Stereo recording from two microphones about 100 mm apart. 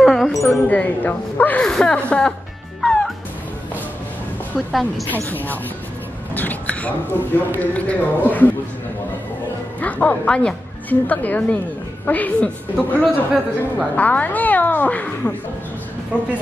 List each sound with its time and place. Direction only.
0.0 s a sound: centre (ahead or behind)
0.5 s speech: 15° left (ahead or behind)
2.8 s music: 5° left (ahead or behind)
4.6 s a woman's voice: centre (ahead or behind)
5.1 s speech: 20° left (ahead or behind)
9.8 s a woman's voice: 15° left (ahead or behind)
13.0 s a man's voice: 5° right (ahead or behind)
13.9 s speech: 15° left (ahead or behind)